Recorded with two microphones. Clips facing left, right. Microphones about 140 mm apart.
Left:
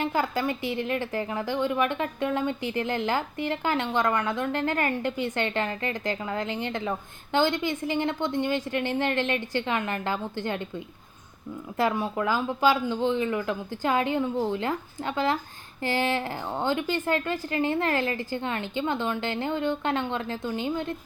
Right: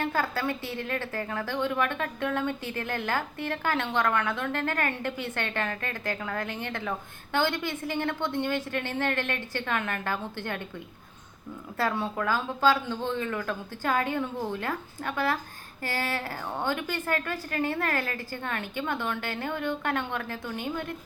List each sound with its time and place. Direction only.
0.0 s speech: 15° left (ahead or behind)
11.8 s a woman's voice: 10° left (ahead or behind)